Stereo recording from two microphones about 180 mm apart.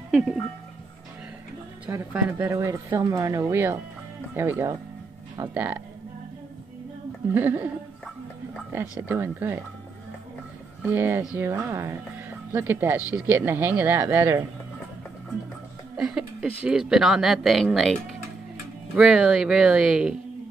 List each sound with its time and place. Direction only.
0.1 s music: centre (ahead or behind)
1.9 s speech: 10° right (ahead or behind)
7.3 s speech: 10° right (ahead or behind)
9.0 s speech: 10° right (ahead or behind)
10.8 s speech: 10° right (ahead or behind)
16.0 s speech: 5° right (ahead or behind)
18.9 s speech: 5° right (ahead or behind)